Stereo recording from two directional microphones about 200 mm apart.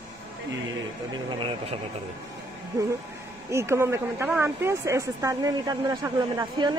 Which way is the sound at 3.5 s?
15° right (ahead or behind).